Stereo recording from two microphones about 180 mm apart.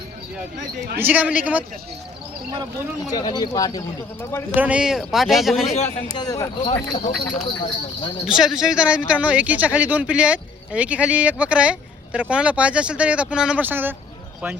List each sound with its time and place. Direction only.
0.9 s speech: 10° right (ahead or behind)
3.1 s speech: 20° left (ahead or behind)
4.5 s speech: 10° right (ahead or behind)
5.6 s a man's voice: 35° left (ahead or behind)
6.1 s speech: 20° left (ahead or behind)
8.4 s speech: centre (ahead or behind)